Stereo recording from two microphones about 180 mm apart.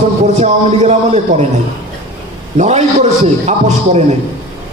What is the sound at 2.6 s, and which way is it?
Speech, 40° right (ahead or behind).